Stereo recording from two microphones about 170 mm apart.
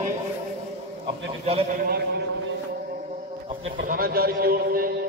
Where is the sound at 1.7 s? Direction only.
60° right (ahead or behind).